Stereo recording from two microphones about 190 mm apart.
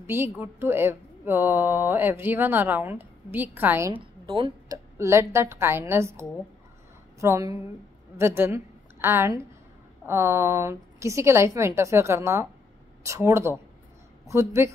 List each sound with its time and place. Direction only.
0.0 s speech: 10° right (ahead or behind)
4.3 s speech: 25° right (ahead or behind)
4.9 s a woman's voice: 15° right (ahead or behind)